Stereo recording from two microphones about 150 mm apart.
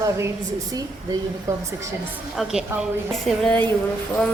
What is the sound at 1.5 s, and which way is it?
Speech, 20° right (ahead or behind).